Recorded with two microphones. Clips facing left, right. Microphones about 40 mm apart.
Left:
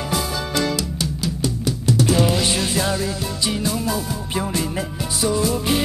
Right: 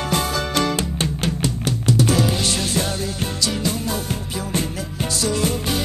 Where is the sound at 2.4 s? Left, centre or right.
Left.